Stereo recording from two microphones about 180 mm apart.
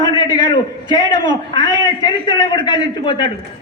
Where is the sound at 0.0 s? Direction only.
20° left (ahead or behind).